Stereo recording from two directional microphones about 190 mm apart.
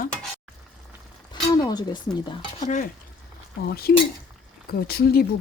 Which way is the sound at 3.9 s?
55° left (ahead or behind).